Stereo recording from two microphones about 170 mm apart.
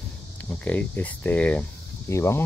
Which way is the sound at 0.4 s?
10° left (ahead or behind).